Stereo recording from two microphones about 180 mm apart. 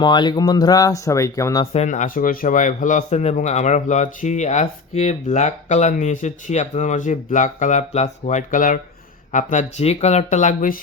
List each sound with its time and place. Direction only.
0.0 s speech: 25° left (ahead or behind)
1.7 s speech: 40° left (ahead or behind)